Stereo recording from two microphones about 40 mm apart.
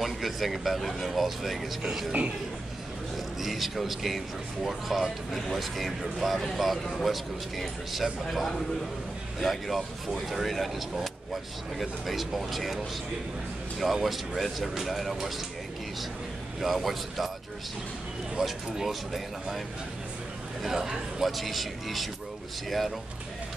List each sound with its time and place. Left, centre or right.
0.0 s speech: centre
1.8 s speech: centre
3.3 s speech: centre
11.8 s speech: centre
13.9 s speech: centre
16.5 s speech: centre
18.4 s speech: centre
21.2 s speech: centre